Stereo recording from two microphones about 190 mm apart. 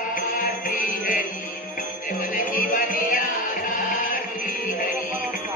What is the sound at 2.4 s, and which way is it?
Music, 45° left (ahead or behind).